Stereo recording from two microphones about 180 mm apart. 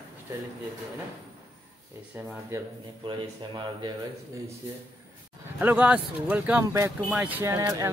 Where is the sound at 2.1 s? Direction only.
10° right (ahead or behind).